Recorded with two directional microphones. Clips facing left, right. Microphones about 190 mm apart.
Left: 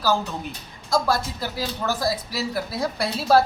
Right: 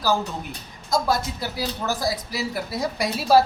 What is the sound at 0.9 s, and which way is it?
Speech, 15° right (ahead or behind).